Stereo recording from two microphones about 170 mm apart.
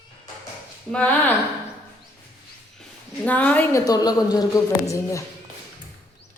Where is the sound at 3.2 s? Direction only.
10° left (ahead or behind).